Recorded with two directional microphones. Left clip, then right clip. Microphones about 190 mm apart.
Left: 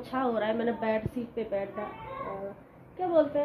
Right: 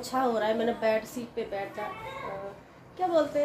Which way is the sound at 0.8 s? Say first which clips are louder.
Right 3 dB; 20° left (ahead or behind).